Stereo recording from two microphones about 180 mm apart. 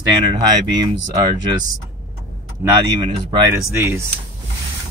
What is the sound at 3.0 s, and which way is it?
Speech, 25° right (ahead or behind).